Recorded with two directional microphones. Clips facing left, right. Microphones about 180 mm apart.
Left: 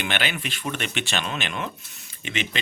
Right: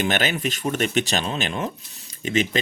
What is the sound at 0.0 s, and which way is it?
Speech, 40° right (ahead or behind).